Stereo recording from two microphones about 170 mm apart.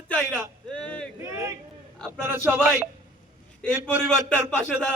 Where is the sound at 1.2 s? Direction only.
15° right (ahead or behind).